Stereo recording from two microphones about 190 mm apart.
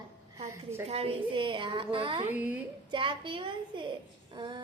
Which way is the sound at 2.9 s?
25° right (ahead or behind).